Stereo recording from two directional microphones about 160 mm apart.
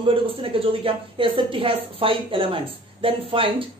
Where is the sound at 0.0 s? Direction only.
35° right (ahead or behind).